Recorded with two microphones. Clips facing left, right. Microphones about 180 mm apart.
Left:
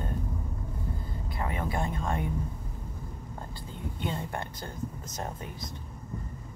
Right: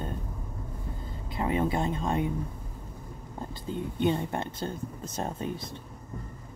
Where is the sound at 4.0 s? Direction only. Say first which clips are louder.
Right 7 dB; 20° right (ahead or behind).